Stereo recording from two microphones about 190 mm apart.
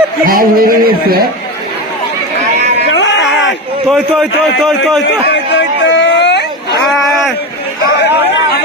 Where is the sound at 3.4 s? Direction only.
Centre (ahead or behind).